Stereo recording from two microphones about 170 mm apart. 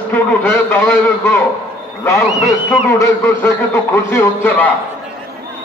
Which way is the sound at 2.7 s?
15° left (ahead or behind).